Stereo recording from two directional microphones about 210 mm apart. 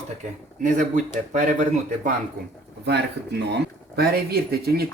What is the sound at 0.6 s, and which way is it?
Speech, 40° right (ahead or behind).